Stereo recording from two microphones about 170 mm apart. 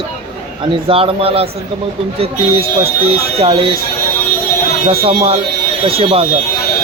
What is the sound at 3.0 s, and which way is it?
Speech, 35° right (ahead or behind).